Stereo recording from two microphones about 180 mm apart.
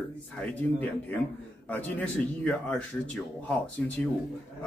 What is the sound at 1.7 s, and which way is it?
Speech, 10° left (ahead or behind).